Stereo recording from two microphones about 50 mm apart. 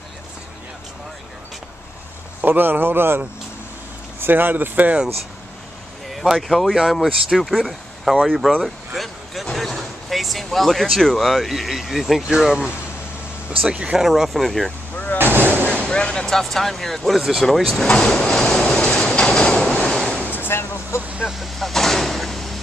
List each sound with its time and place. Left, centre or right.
2.4 s speech: right
4.2 s speech: right
6.0 s speech: centre
8.6 s a sound: centre
9.8 s speech: centre
12.2 s speech: centre
13.9 s speech: centre
15.1 s artillery fire: right
15.9 s speech: centre
17.8 s speech: centre
18.7 s vehicle: centre
20.3 s a sound: left
21.2 s vehicle: centre